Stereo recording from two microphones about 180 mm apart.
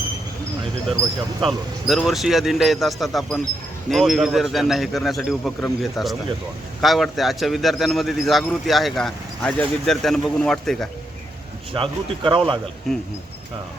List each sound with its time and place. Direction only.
1.4 s speech: centre (ahead or behind)
11.7 s speech: 30° right (ahead or behind)
12.9 s speech: centre (ahead or behind)